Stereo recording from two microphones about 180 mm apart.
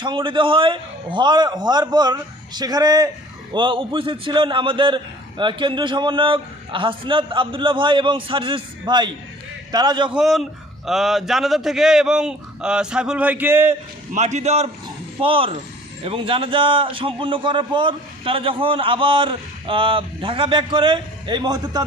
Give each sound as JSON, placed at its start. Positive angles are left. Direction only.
{"t": 0.0, "sound": "a man's voice", "side_deg": -25}
{"t": 10.1, "sound": "a man's voice", "side_deg": 0}
{"t": 14.1, "sound": "a man's voice", "side_deg": -40}